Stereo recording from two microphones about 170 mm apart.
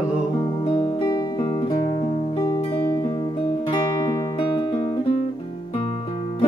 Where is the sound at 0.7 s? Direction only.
20° left (ahead or behind).